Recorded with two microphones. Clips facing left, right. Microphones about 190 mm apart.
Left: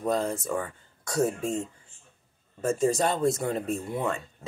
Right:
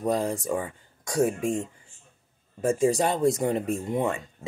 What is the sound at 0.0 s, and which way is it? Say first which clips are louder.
Speech: right 1 dB; 15° right (ahead or behind).